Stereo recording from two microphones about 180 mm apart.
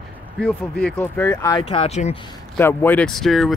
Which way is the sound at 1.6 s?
30° left (ahead or behind).